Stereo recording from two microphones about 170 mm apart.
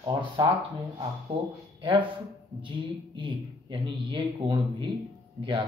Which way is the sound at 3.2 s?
30° right (ahead or behind).